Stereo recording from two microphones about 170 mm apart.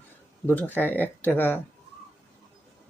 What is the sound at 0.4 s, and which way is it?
Speech, 10° left (ahead or behind).